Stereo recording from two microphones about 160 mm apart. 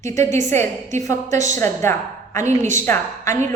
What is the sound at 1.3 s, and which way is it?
Speech, 50° right (ahead or behind).